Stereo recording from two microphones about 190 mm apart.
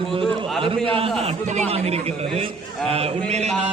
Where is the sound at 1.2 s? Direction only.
35° right (ahead or behind).